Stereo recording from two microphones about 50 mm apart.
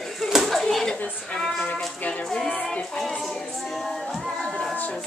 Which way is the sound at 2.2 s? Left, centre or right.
Centre.